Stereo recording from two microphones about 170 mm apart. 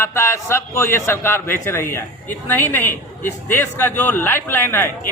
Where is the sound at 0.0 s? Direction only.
15° left (ahead or behind).